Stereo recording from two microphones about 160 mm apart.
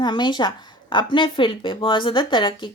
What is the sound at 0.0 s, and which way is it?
Speech, 30° left (ahead or behind).